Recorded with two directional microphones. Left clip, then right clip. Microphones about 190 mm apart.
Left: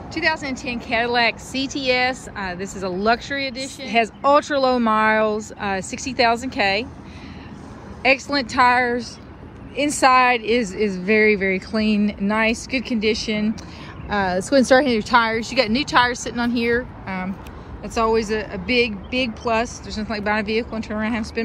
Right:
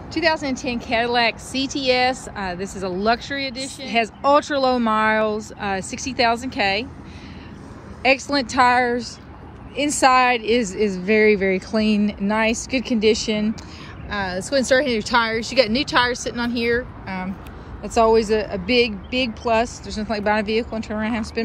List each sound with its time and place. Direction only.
0.1 s a woman's voice: 20° right (ahead or behind)
8.0 s a woman's voice: 15° right (ahead or behind)
14.0 s a woman's voice: 10° left (ahead or behind); by 21.3 s 10° right (ahead or behind)